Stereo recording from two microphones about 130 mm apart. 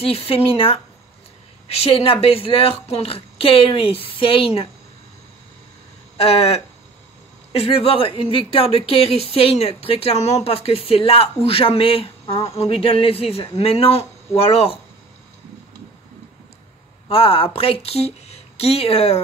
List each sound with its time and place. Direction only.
0.0 s speech: 45° left (ahead or behind)
6.1 s speech: 50° left (ahead or behind)
17.1 s speech: 45° left (ahead or behind)